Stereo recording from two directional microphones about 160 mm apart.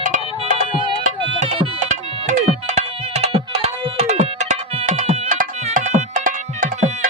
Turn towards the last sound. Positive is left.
turn(degrees=-55)  # may be behind; listen again after turning